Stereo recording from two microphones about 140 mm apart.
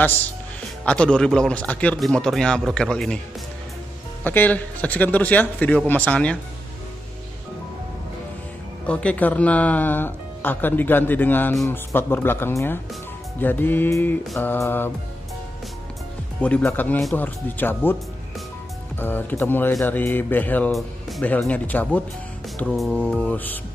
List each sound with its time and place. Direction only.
0.8 s speech: 5° left (ahead or behind)
4.2 s speech: 15° left (ahead or behind)
8.8 s speech: 10° left (ahead or behind)
16.3 s speech: 10° left (ahead or behind)
18.9 s speech: 15° left (ahead or behind)